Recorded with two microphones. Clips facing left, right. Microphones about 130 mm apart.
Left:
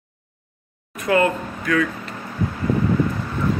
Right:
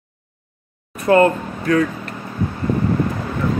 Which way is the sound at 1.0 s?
35° right (ahead or behind).